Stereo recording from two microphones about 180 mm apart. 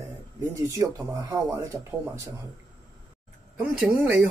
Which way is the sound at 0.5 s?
20° right (ahead or behind).